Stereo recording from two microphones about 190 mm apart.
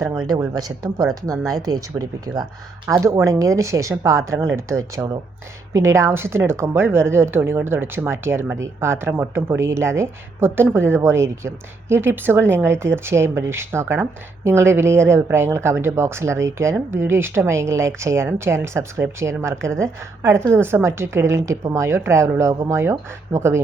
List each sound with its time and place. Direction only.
0.3 s speech: 20° right (ahead or behind)